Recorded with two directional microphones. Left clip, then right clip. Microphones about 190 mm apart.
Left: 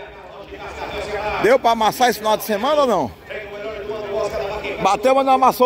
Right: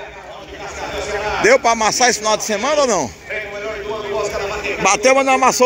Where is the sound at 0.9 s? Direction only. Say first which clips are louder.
Right 2 dB; 45° right (ahead or behind).